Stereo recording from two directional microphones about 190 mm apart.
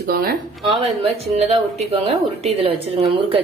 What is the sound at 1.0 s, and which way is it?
Speech, 30° right (ahead or behind).